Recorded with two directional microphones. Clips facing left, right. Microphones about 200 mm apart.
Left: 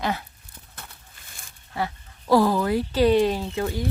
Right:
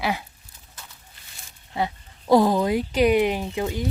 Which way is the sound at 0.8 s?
60° left (ahead or behind).